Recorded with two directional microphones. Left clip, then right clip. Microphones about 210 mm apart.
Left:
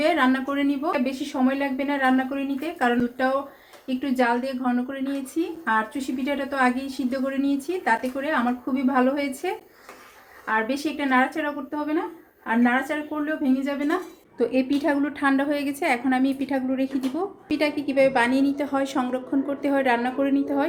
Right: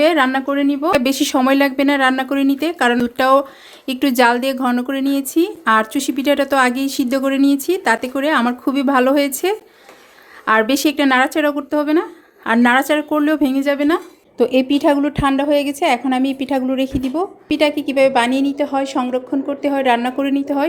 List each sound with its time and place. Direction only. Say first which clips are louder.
0.0 s speech: right 7 dB; 35° right (ahead or behind)
1.0 s speech: right 10 dB; 55° right (ahead or behind); by 20.7 s 30° right (ahead or behind)